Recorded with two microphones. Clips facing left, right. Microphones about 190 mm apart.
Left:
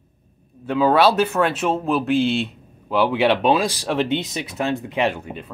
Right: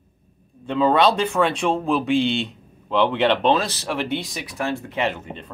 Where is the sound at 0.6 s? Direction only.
5° left (ahead or behind).